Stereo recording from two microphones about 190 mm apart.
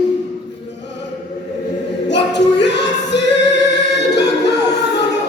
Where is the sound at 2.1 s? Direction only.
65° left (ahead or behind).